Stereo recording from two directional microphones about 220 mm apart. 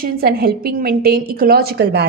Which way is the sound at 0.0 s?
45° right (ahead or behind).